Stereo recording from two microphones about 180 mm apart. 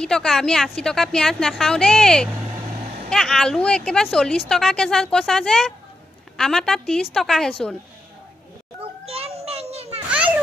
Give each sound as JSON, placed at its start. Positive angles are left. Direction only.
{"t": 0.0, "sound": "speech", "side_deg": 5}
{"t": 9.0, "sound": "children playing", "side_deg": -35}
{"t": 10.0, "sound": "children playing", "side_deg": -5}